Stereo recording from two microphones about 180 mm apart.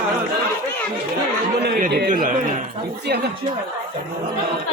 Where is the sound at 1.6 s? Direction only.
60° right (ahead or behind).